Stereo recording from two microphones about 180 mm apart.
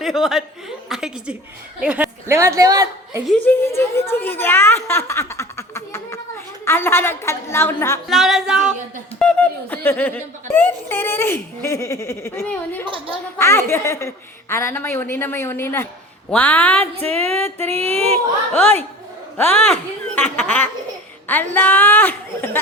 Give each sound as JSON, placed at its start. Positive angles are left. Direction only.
{"t": 0.0, "sound": "speech", "side_deg": 0}
{"t": 0.9, "sound": "a sound", "side_deg": -5}
{"t": 1.8, "sound": "a woman's voice", "side_deg": -5}
{"t": 3.2, "sound": "speech", "side_deg": 5}
{"t": 5.3, "sound": "a sound", "side_deg": 15}
{"t": 6.7, "sound": "speech", "side_deg": 15}
{"t": 8.1, "sound": "music", "side_deg": 0}
{"t": 9.1, "sound": "snicker", "side_deg": 5}
{"t": 12.8, "sound": "a woman's voice", "side_deg": -30}
{"t": 13.4, "sound": "speech", "side_deg": 15}
{"t": 17.7, "sound": "speech", "side_deg": -35}
{"t": 19.4, "sound": "speech", "side_deg": 10}